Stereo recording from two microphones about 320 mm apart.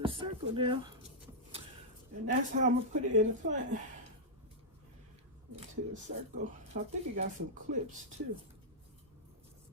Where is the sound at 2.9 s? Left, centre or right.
Right.